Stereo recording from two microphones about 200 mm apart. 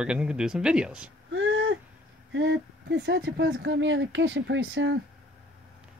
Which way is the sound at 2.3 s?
65° right (ahead or behind).